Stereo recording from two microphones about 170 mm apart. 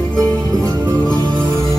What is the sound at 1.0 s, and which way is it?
Music, 5° left (ahead or behind).